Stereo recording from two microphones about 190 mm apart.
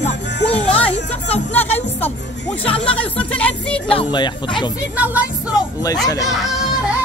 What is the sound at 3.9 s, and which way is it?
Speech, 25° left (ahead or behind).